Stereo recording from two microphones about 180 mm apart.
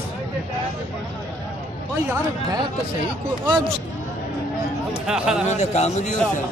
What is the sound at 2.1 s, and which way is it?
Speech, 20° right (ahead or behind).